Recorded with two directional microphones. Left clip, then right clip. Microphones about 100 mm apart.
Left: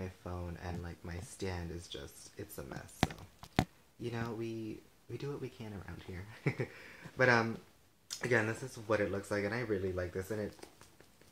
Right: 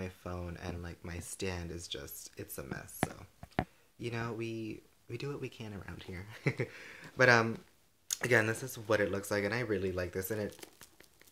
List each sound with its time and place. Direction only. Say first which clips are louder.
0.0 s speech: right 2 dB; 15° right (ahead or behind)
4.0 s speech: right 2 dB; 15° right (ahead or behind)